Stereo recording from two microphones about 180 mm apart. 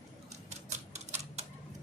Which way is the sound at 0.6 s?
40° right (ahead or behind).